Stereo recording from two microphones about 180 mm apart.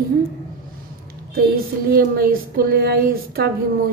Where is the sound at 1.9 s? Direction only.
55° right (ahead or behind).